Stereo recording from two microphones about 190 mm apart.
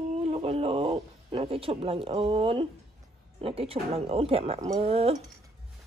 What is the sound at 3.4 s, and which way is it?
Speech, 30° right (ahead or behind).